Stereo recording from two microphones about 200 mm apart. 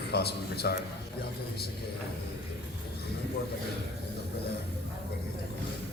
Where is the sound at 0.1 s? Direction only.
55° left (ahead or behind).